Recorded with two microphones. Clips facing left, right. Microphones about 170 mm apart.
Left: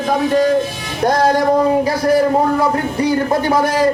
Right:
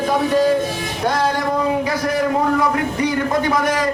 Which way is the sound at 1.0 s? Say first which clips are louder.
Left 6 dB; 40° left (ahead or behind).